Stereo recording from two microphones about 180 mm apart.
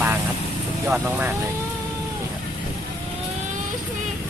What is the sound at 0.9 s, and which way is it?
Speech, 10° right (ahead or behind).